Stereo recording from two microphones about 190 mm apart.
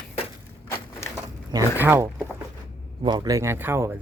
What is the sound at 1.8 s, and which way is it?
Speech, 10° right (ahead or behind).